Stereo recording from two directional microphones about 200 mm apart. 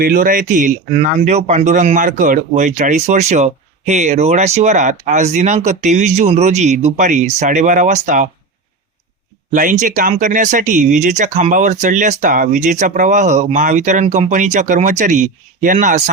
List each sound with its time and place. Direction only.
0.0 s speech: 45° right (ahead or behind)
9.5 s speech: 40° right (ahead or behind)